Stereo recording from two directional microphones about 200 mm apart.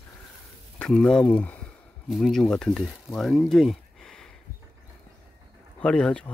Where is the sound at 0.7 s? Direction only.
5° left (ahead or behind).